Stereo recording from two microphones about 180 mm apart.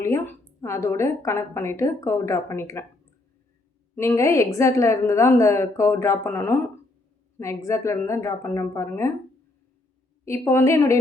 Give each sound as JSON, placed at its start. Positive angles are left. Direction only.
{"t": 0.0, "sound": "a woman's voice", "side_deg": 15}
{"t": 3.9, "sound": "a woman's voice", "side_deg": 15}
{"t": 10.2, "sound": "a woman's voice", "side_deg": 15}